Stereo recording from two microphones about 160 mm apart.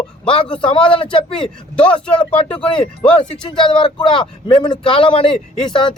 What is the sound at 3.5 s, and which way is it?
Speech, 30° left (ahead or behind).